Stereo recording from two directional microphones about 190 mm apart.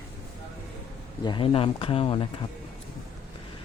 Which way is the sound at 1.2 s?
25° left (ahead or behind).